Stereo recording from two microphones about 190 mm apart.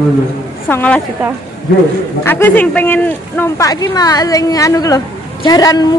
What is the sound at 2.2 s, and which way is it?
Speech, 10° left (ahead or behind).